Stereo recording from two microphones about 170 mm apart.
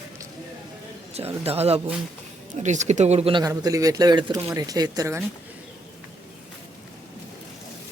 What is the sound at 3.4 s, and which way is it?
Speech, 20° right (ahead or behind).